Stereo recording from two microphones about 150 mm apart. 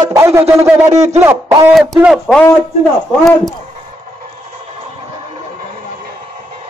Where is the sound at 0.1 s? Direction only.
20° right (ahead or behind); by 3.5 s centre (ahead or behind).